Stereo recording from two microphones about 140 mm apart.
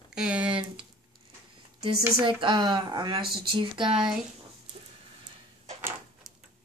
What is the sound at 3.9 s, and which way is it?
Speech, 5° right (ahead or behind).